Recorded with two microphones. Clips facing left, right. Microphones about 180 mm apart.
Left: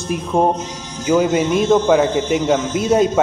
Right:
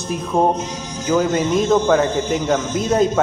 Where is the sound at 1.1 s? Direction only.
15° left (ahead or behind).